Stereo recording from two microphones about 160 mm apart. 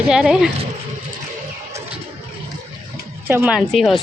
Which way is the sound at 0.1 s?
5° right (ahead or behind).